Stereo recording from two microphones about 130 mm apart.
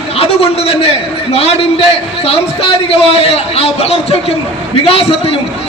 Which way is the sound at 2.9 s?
50° left (ahead or behind).